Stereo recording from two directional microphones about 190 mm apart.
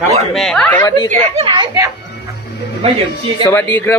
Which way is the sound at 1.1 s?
30° right (ahead or behind).